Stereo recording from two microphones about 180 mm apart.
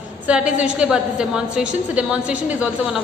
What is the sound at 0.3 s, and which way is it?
A woman's voice, 5° right (ahead or behind).